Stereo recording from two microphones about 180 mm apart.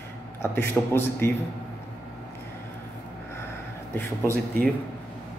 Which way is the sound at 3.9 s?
15° left (ahead or behind).